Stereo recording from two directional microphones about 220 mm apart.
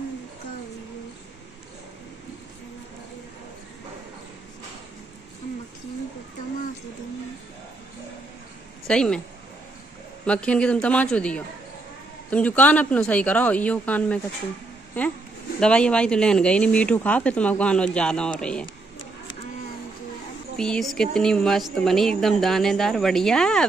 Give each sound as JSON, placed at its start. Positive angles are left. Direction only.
{"t": 8.8, "sound": "speech", "side_deg": 5}
{"t": 10.2, "sound": "speech", "side_deg": 5}
{"t": 15.6, "sound": "speech", "side_deg": 5}
{"t": 20.5, "sound": "speech", "side_deg": 5}